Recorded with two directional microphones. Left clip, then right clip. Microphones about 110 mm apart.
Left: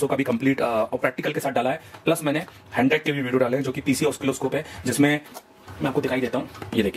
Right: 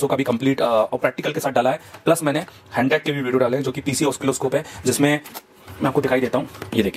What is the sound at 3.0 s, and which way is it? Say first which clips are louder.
Speech: right 3 dB; 15° right (ahead or behind).